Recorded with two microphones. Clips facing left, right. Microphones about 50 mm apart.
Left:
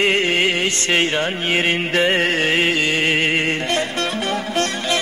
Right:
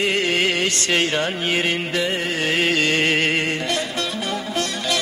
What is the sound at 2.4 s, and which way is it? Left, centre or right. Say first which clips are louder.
Music: left 3 dB; left.